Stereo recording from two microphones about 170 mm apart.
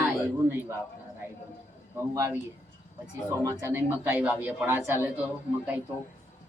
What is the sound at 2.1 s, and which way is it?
Speech, 15° right (ahead or behind).